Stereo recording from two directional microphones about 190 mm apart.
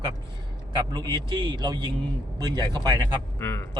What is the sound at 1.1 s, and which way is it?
A man's voice, 25° right (ahead or behind).